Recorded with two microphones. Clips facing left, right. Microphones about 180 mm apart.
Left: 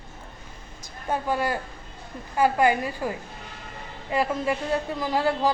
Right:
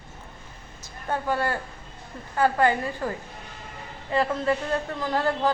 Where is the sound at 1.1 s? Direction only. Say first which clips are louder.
Left 1 dB; 15° left (ahead or behind).